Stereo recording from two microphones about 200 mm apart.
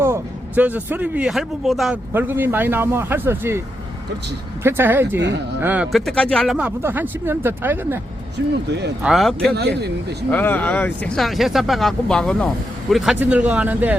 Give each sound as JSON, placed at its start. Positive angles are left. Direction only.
{"t": 0.0, "sound": "a man's voice", "side_deg": -10}
{"t": 4.6, "sound": "a man's voice", "side_deg": -10}
{"t": 8.4, "sound": "speech", "side_deg": -65}
{"t": 9.0, "sound": "speech", "side_deg": 0}
{"t": 9.6, "sound": "speech", "side_deg": -55}
{"t": 10.3, "sound": "a man's voice", "side_deg": 10}